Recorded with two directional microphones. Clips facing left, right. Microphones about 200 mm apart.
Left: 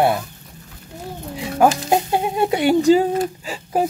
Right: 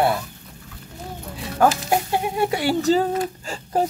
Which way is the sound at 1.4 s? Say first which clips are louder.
Left 3 dB; 15° left (ahead or behind).